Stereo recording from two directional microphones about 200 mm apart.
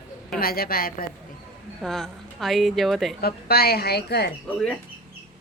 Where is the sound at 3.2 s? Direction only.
50° left (ahead or behind).